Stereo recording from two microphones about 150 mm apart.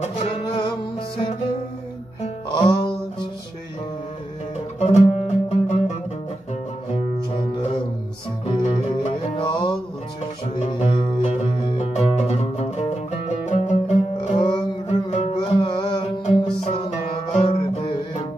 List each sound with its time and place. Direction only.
0.2 s music: 35° left (ahead or behind)
4.7 s music: 45° left (ahead or behind)
8.6 s music: 45° left (ahead or behind)
10.6 s music: 45° left (ahead or behind)
14.9 s music: 45° left (ahead or behind)
15.3 s music: 30° left (ahead or behind)
16.6 s music: 45° left (ahead or behind)